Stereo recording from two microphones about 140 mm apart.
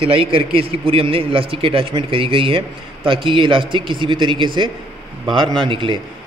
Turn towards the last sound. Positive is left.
turn(degrees=-35)  # may be behind; listen again after turning